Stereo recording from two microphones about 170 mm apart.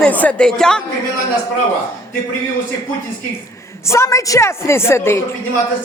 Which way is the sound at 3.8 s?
15° left (ahead or behind).